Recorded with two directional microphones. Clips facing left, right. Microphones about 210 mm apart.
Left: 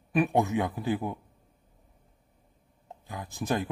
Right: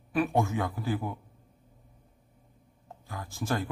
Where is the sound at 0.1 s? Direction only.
20° left (ahead or behind).